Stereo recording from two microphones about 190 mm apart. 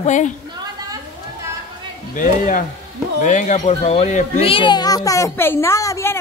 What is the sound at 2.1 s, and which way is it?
A child's voice, 45° left (ahead or behind).